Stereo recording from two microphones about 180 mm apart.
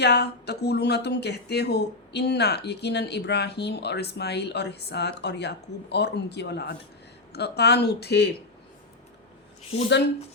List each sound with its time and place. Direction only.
0.0 s speech: 65° left (ahead or behind)